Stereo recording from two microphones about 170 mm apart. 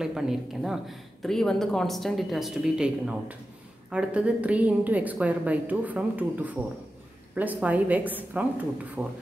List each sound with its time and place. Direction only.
0.0 s a woman's voice: 5° right (ahead or behind)